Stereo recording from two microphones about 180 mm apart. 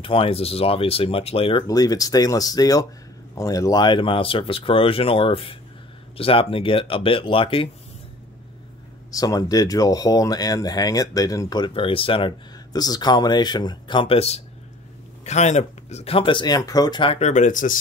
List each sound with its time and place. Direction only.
0.0 s speech: 30° left (ahead or behind)
1.7 s speech: 20° left (ahead or behind)
9.1 s speech: 20° left (ahead or behind); by 17.7 s 45° left (ahead or behind)